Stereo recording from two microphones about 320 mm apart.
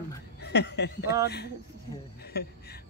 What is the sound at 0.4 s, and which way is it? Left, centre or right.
Speech, left.